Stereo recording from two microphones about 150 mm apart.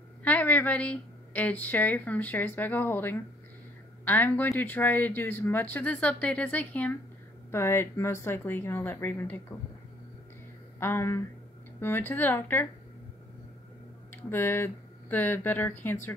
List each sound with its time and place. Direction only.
0.2 s a woman's voice: 10° left (ahead or behind)
10.8 s speech: 15° left (ahead or behind)
14.1 s speech: 15° left (ahead or behind)